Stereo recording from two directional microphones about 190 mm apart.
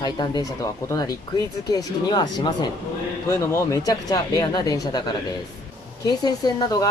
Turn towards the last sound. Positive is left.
turn(degrees=20)  # may be behind; listen again after turning